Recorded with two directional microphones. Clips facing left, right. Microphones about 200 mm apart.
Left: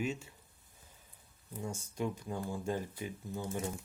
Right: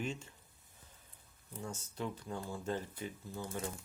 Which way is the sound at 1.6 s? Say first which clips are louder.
Left 4 dB; 10° left (ahead or behind).